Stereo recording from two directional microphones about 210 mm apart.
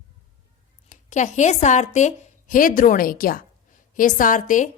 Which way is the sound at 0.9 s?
35° left (ahead or behind).